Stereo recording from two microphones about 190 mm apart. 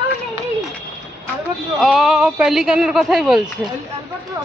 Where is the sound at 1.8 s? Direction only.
5° right (ahead or behind).